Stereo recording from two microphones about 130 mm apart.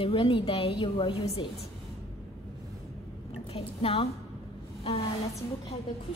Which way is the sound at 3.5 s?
45° left (ahead or behind).